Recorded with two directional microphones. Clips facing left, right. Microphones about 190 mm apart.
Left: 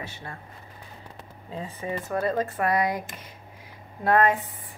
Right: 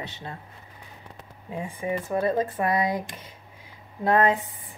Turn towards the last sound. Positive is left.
turn(degrees=-15)  # may be behind; listen again after turning